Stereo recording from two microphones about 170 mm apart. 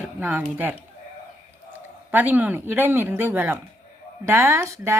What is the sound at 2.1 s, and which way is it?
A woman's voice, 10° right (ahead or behind).